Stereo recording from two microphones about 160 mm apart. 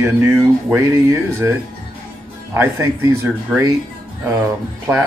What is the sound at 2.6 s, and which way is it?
Speech, 10° right (ahead or behind).